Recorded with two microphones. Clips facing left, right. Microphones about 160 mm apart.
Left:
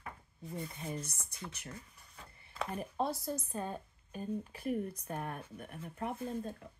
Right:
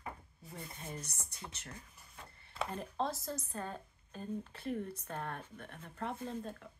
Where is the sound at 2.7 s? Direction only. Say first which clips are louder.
Left 3 dB; 10° left (ahead or behind).